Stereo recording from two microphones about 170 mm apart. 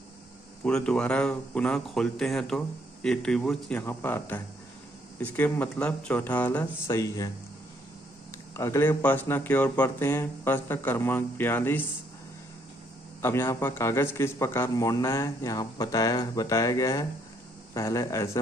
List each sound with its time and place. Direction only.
0.7 s speech: 5° left (ahead or behind); by 7.3 s 20° left (ahead or behind)
8.5 s speech: 15° left (ahead or behind)
13.2 s a man's voice: 15° left (ahead or behind)